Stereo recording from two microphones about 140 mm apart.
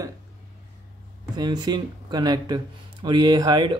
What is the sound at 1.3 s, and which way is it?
Speech, 30° right (ahead or behind).